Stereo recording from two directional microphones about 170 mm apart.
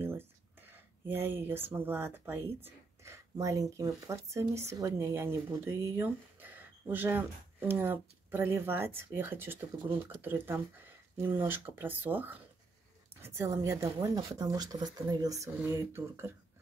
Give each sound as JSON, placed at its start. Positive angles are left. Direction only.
{"t": 0.7, "sound": "speech", "side_deg": -15}